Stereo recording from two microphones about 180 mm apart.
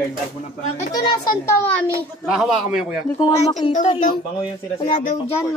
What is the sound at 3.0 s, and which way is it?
Speech, 25° left (ahead or behind).